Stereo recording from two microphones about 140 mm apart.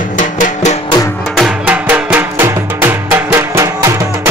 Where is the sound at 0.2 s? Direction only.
60° left (ahead or behind).